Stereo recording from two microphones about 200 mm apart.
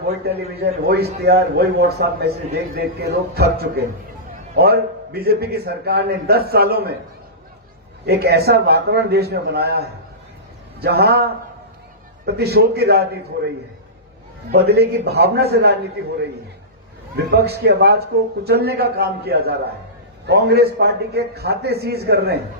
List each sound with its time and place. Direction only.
0.2 s a man's voice: 55° right (ahead or behind)
8.0 s a man's voice: 55° right (ahead or behind)
14.5 s a man's voice: 55° right (ahead or behind)
17.2 s a man's voice: 55° right (ahead or behind)